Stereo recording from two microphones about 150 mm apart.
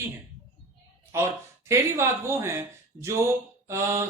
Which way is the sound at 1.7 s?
20° right (ahead or behind).